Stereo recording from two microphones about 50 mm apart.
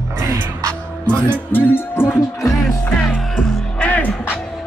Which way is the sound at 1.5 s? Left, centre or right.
Left.